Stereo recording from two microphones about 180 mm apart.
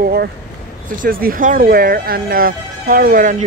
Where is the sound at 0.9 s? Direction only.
50° right (ahead or behind).